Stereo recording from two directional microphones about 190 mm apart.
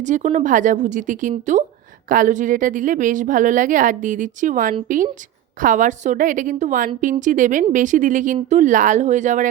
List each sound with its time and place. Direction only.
0.0 s speech: 40° right (ahead or behind)